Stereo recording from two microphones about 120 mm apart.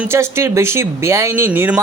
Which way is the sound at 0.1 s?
20° right (ahead or behind).